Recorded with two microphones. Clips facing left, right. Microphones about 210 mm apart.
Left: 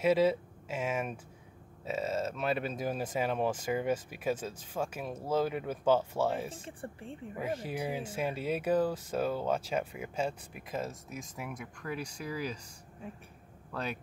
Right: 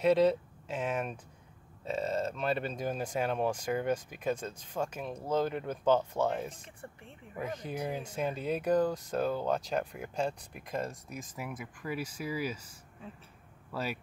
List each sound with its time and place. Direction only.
0.0 s speech: 5° left (ahead or behind)
6.8 s speech: 30° left (ahead or behind)
7.3 s speech: 5° left (ahead or behind)
13.7 s speech: 5° right (ahead or behind)